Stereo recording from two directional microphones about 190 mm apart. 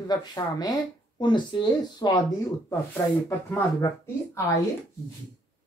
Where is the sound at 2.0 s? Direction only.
20° left (ahead or behind).